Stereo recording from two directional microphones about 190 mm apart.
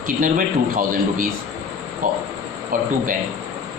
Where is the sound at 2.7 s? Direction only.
45° right (ahead or behind).